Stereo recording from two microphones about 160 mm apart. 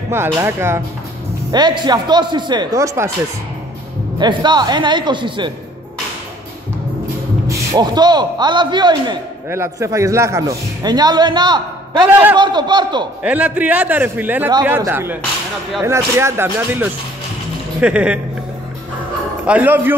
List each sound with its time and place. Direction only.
0.1 s a man's voice: 15° right (ahead or behind)
1.5 s a man's voice: 25° right (ahead or behind)
4.2 s a man's voice: 30° right (ahead or behind)
7.4 s a man's voice: 20° right (ahead or behind)
12.1 s a man's voice: 10° right (ahead or behind)
12.4 s a man's voice: 30° right (ahead or behind)
13.2 s a man's voice: 10° right (ahead or behind)
19.4 s a man's voice: 10° right (ahead or behind)